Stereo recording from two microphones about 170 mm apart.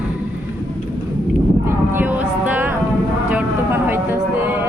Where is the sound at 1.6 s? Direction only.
10° right (ahead or behind).